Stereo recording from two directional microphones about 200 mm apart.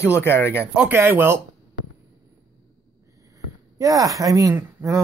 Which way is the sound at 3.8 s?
15° right (ahead or behind).